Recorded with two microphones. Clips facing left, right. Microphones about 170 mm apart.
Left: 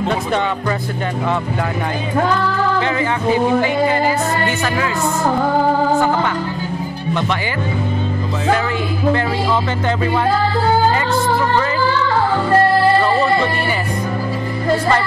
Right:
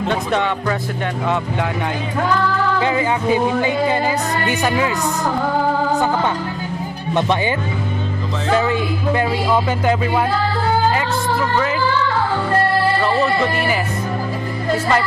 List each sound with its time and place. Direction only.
0.1 s speech: centre (ahead or behind)
2.8 s music: 15° right (ahead or behind)
8.5 s music: 15° right (ahead or behind)
13.0 s music: 5° right (ahead or behind)